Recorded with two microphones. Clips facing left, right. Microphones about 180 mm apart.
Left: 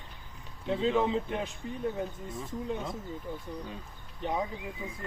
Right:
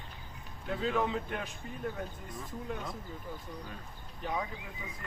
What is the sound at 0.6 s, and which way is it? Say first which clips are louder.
Speech: left 4 dB; 25° left (ahead or behind).